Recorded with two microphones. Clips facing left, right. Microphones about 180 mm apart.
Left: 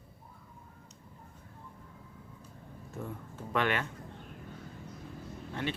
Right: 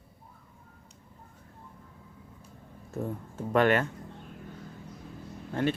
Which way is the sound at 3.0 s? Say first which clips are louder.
Right 7 dB; 45° right (ahead or behind).